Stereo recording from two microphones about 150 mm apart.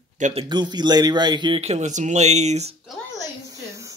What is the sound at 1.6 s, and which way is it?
Speech, 50° right (ahead or behind).